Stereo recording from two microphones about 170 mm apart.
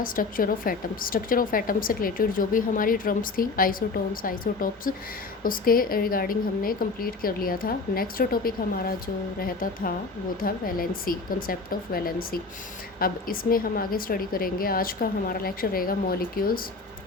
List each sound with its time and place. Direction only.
0.0 s a woman's voice: 55° left (ahead or behind)